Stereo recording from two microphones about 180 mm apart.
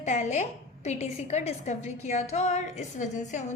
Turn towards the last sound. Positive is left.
turn(degrees=40)  # may be behind; listen again after turning